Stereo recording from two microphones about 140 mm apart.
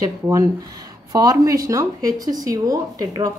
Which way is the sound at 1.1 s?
25° right (ahead or behind).